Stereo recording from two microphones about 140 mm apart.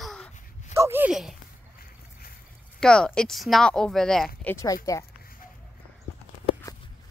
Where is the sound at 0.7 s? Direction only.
15° right (ahead or behind).